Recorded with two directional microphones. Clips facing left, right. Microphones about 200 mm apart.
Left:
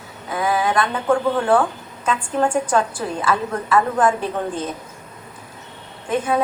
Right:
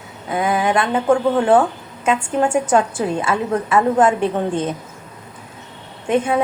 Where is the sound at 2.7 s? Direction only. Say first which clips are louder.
Right 4 dB; 25° right (ahead or behind).